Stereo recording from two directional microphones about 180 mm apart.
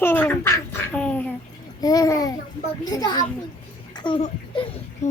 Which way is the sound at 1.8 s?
20° left (ahead or behind).